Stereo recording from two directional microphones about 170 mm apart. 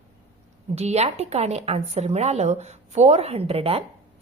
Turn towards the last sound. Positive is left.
turn(degrees=-35)  # may be behind; listen again after turning